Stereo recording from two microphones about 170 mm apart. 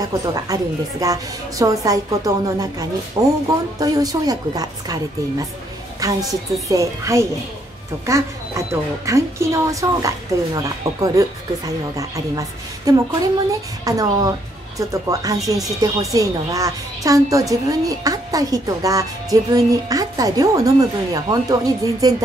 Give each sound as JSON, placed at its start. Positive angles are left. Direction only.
{"t": 0.0, "sound": "a woman's voice", "side_deg": -20}